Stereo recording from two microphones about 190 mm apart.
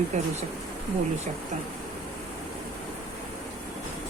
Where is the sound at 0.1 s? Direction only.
40° right (ahead or behind).